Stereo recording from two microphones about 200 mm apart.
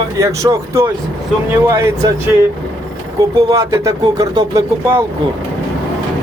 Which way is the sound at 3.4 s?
15° right (ahead or behind).